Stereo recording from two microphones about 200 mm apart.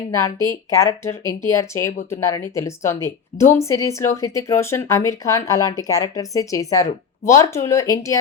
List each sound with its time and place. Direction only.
0.1 s speech: 15° left (ahead or behind)